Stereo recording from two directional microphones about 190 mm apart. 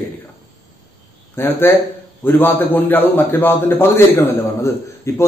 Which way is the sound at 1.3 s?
10° left (ahead or behind).